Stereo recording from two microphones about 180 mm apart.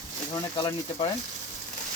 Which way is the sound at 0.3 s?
25° left (ahead or behind).